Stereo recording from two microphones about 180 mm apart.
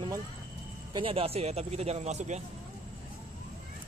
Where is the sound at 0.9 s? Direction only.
30° right (ahead or behind).